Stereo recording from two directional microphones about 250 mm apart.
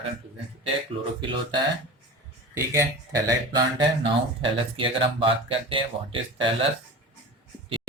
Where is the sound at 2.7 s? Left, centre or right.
Centre.